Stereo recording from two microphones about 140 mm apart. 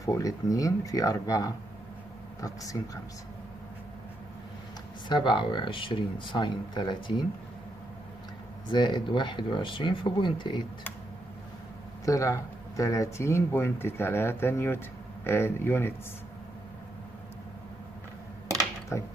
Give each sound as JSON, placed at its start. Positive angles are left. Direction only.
{"t": 0.0, "sound": "speech", "side_deg": 25}
{"t": 5.0, "sound": "speech", "side_deg": 35}
{"t": 8.6, "sound": "speech", "side_deg": 35}
{"t": 12.0, "sound": "speech", "side_deg": 25}
{"t": 18.9, "sound": "speech", "side_deg": 20}